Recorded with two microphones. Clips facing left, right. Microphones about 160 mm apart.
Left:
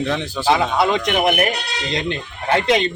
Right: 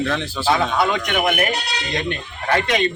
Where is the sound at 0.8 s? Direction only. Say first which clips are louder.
Left 2 dB; 30° left (ahead or behind).